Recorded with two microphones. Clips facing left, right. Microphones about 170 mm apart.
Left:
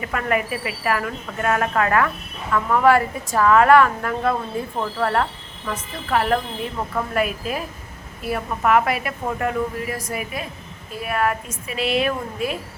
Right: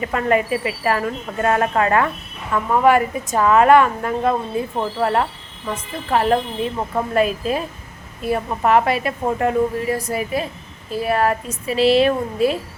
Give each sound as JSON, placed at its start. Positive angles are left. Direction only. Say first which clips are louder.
{"t": 0.0, "sound": "a woman's voice", "louder": "right 4 dB", "side_deg": -30}